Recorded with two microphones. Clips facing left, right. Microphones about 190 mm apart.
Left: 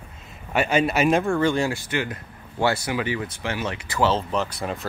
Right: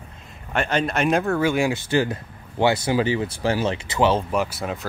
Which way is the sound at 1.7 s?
30° right (ahead or behind).